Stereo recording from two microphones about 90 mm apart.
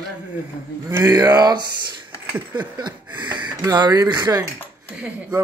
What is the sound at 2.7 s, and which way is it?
Speech, 55° right (ahead or behind).